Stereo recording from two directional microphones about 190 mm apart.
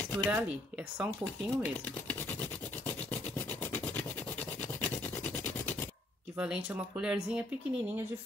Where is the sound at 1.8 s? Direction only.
5° left (ahead or behind).